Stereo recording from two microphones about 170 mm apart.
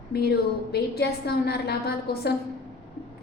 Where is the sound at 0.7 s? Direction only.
70° left (ahead or behind).